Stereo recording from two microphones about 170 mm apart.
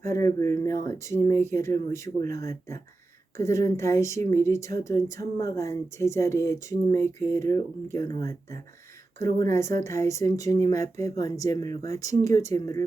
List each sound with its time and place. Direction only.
0.0 s speech: 15° left (ahead or behind)
9.5 s speech: 15° left (ahead or behind)